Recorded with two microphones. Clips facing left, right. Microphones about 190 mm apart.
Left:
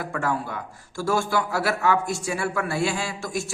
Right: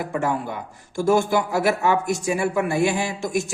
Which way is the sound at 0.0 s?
20° right (ahead or behind).